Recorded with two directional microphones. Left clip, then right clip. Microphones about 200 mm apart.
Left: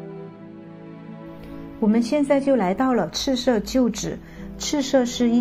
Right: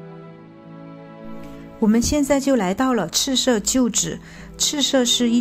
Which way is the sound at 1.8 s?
30° right (ahead or behind).